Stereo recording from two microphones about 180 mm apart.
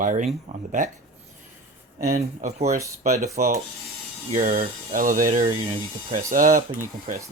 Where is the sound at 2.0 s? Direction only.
40° right (ahead or behind).